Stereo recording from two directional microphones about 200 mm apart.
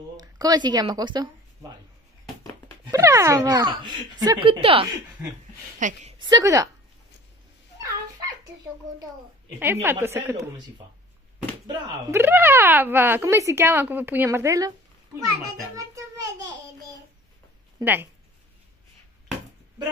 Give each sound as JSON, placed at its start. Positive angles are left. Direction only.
{"t": 0.2, "sound": "speech", "side_deg": -20}
{"t": 2.9, "sound": "speech", "side_deg": -15}
{"t": 5.8, "sound": "a woman's voice", "side_deg": -40}
{"t": 6.2, "sound": "speech", "side_deg": -20}
{"t": 9.6, "sound": "speech", "side_deg": -10}
{"t": 11.6, "sound": "speech", "side_deg": -20}
{"t": 12.2, "sound": "speech", "side_deg": -10}
{"t": 15.4, "sound": "a sound", "side_deg": -15}
{"t": 17.7, "sound": "speech", "side_deg": -10}